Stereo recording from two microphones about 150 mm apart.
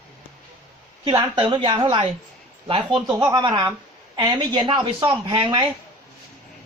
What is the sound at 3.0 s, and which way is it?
A woman's voice, 30° right (ahead or behind).